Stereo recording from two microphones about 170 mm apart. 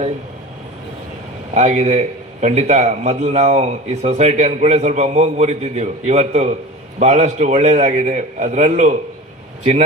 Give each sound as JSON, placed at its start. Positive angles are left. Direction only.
{"t": 1.5, "sound": "a man's voice", "side_deg": -40}